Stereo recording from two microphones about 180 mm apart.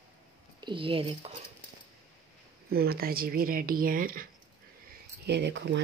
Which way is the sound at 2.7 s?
55° right (ahead or behind).